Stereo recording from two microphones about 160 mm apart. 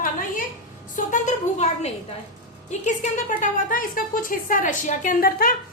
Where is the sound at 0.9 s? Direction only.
50° left (ahead or behind).